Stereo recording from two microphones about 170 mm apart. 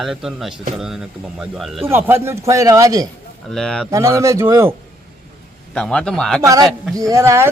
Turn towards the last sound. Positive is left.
turn(degrees=-15)  # may be behind; listen again after turning